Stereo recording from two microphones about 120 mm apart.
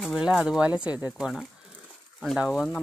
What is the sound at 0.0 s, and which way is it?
Speech, 5° right (ahead or behind).